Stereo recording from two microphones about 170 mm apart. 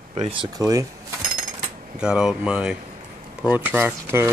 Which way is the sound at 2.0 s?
5° right (ahead or behind).